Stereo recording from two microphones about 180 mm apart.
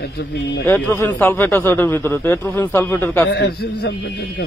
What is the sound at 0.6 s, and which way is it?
A man's voice, 15° left (ahead or behind).